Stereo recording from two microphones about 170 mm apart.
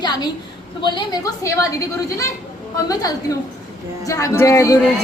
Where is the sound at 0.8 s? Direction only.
25° left (ahead or behind).